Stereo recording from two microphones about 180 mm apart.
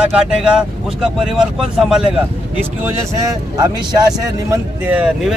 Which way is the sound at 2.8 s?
15° right (ahead or behind).